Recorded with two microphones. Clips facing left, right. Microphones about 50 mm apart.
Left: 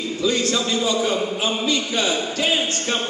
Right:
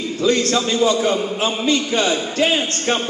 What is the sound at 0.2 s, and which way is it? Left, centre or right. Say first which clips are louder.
A man's voice: right 4 dB; right.